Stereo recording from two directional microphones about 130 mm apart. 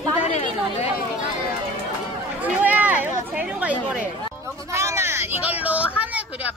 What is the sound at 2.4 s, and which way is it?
Speech, 10° right (ahead or behind).